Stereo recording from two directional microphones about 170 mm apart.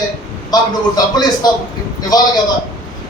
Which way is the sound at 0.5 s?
25° left (ahead or behind).